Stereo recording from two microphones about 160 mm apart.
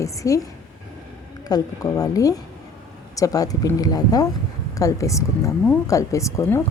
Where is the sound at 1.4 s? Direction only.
25° left (ahead or behind).